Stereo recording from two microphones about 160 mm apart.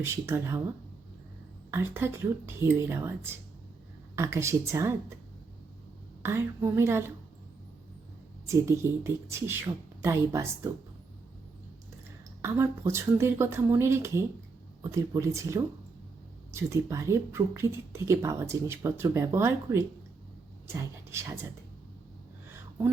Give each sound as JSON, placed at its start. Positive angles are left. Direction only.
{"t": 0.0, "sound": "a woman's voice", "side_deg": -15}
{"t": 1.7, "sound": "a woman's voice", "side_deg": -15}
{"t": 4.1, "sound": "a woman's voice", "side_deg": -15}
{"t": 6.2, "sound": "a woman's voice", "side_deg": -15}
{"t": 8.4, "sound": "a woman's voice", "side_deg": -20}
{"t": 12.4, "sound": "a woman's voice", "side_deg": -15}